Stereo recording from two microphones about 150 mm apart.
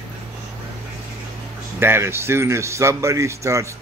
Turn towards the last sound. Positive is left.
turn(degrees=-20)  # may be behind; listen again after turning